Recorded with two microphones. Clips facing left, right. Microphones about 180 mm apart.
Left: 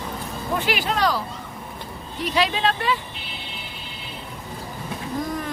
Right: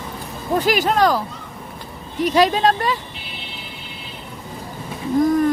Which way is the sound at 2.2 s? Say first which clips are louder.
Right 6 dB; 45° right (ahead or behind).